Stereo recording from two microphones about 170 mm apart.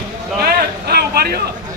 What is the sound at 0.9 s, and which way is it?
Speech, 65° right (ahead or behind).